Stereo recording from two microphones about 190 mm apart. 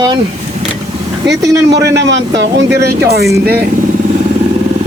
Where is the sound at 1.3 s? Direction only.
65° right (ahead or behind).